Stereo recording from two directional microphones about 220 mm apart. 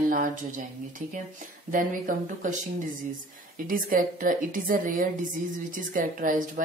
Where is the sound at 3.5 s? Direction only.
40° right (ahead or behind).